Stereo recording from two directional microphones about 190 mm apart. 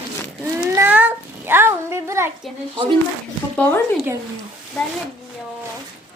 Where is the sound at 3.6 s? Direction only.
10° left (ahead or behind).